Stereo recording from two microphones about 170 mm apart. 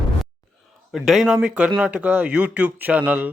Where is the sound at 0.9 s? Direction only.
Centre (ahead or behind).